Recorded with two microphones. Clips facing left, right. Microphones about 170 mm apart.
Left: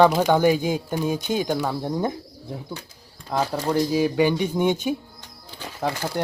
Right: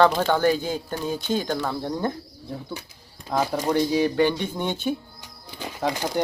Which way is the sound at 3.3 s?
10° right (ahead or behind).